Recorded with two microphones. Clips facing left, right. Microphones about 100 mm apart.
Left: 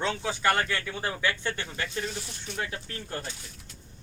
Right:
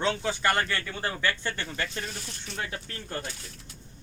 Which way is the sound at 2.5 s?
5° left (ahead or behind).